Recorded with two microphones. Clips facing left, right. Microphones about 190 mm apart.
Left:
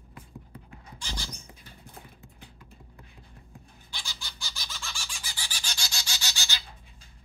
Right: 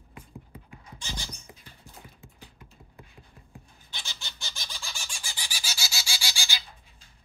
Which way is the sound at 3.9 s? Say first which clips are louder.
Even; 25° right (ahead or behind).